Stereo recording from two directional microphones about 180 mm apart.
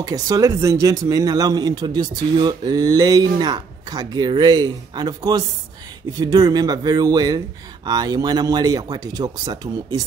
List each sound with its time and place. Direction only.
0.0 s speech: 20° right (ahead or behind)